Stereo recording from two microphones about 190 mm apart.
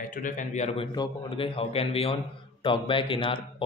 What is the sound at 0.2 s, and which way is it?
Speech, 40° left (ahead or behind).